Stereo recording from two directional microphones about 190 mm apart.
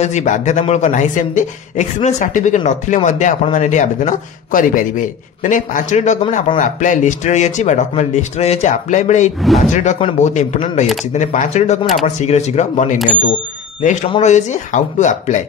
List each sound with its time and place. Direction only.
0.0 s speech: 40° left (ahead or behind)